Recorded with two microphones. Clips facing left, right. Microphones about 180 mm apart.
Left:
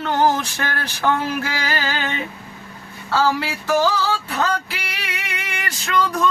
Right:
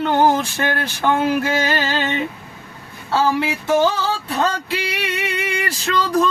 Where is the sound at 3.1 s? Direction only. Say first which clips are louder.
Right 2 dB; 25° right (ahead or behind).